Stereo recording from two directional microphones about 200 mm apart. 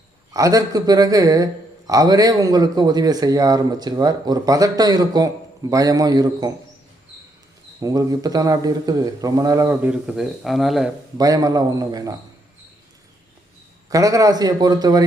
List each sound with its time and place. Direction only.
0.3 s a man's voice: 15° right (ahead or behind)
7.8 s a man's voice: 20° right (ahead or behind); by 10.9 s centre (ahead or behind)
11.2 s a man's voice: 20° right (ahead or behind)
13.9 s a man's voice: 15° right (ahead or behind)